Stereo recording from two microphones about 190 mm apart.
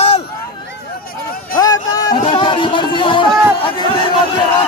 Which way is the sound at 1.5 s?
20° left (ahead or behind).